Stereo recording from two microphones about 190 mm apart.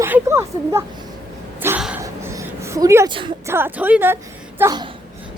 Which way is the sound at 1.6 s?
10° right (ahead or behind).